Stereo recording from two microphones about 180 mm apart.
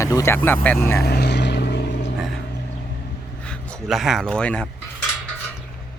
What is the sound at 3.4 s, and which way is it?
Speech, 5° left (ahead or behind).